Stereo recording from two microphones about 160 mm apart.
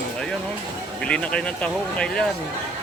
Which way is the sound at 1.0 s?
5° left (ahead or behind).